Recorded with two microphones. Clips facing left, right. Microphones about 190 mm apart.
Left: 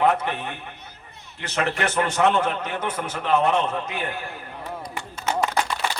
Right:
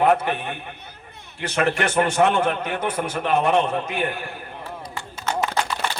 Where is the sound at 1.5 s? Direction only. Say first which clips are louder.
Right 3 dB; 55° right (ahead or behind).